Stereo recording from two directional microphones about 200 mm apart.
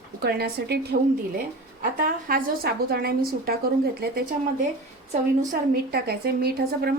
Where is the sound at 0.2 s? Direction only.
55° right (ahead or behind).